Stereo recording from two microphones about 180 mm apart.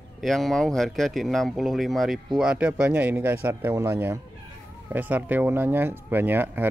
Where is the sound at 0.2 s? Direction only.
Centre (ahead or behind).